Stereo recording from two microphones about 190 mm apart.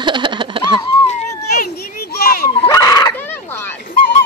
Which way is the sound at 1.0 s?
35° left (ahead or behind).